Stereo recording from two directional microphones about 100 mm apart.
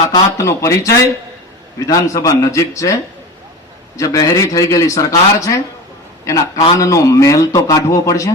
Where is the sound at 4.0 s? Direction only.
35° left (ahead or behind).